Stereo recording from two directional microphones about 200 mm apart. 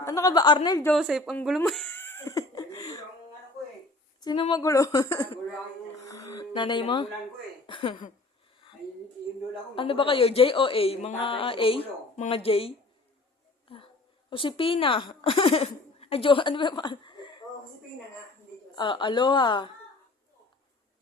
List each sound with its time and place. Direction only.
0.0 s a woman's voice: 15° left (ahead or behind)
0.9 s speech: centre (ahead or behind)
1.5 s a sound: centre (ahead or behind); by 3.0 s 20° left (ahead or behind)
4.2 s speech: 25° left (ahead or behind)
6.1 s a sound: 20° left (ahead or behind)
7.7 s a woman's voice: 25° left (ahead or behind)
9.7 s a woman's voice: 25° left (ahead or behind)
18.8 s a woman's voice: 25° left (ahead or behind)